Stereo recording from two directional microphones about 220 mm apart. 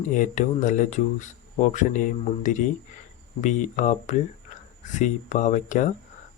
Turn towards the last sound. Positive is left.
turn(degrees=35)  # may be behind; listen again after turning